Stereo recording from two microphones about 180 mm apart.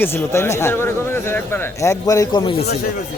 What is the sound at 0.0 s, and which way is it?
Speech, 15° left (ahead or behind).